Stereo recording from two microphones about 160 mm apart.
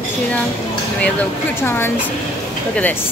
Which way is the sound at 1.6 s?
15° left (ahead or behind).